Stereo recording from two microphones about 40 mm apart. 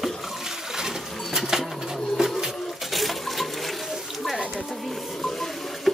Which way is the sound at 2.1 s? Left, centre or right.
Centre.